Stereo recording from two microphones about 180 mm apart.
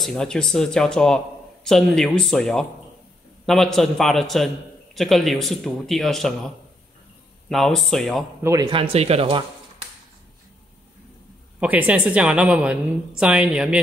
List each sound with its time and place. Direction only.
0.0 s speech: 5° left (ahead or behind)
7.4 s speech: centre (ahead or behind)
8.4 s speech: 15° right (ahead or behind)
8.6 s speech: 30° right (ahead or behind)
11.6 s speech: 10° right (ahead or behind)